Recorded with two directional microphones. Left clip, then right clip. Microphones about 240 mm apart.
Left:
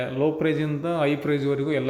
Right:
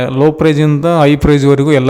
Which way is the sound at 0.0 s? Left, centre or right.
Right.